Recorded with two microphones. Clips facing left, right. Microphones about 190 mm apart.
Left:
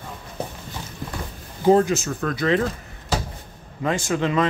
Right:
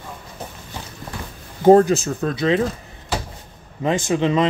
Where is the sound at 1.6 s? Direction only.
45° right (ahead or behind); by 2.6 s 20° right (ahead or behind).